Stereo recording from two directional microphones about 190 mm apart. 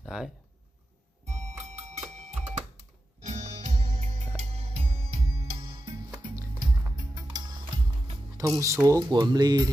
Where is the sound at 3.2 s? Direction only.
35° right (ahead or behind).